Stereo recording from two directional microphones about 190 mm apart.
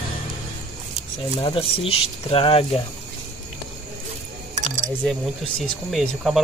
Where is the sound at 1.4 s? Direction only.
30° left (ahead or behind).